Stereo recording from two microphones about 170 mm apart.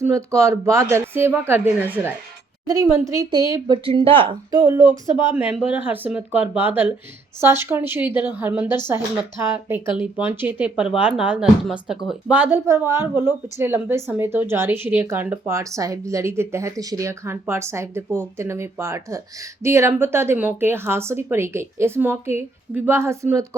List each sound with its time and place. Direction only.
0.0 s a woman's voice: 15° right (ahead or behind)
5.3 s speech: 10° right (ahead or behind)